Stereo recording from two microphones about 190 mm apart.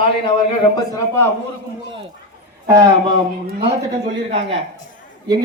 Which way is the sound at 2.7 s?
15° right (ahead or behind).